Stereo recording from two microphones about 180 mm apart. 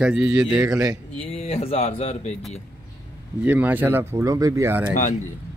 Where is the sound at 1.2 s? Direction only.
35° left (ahead or behind).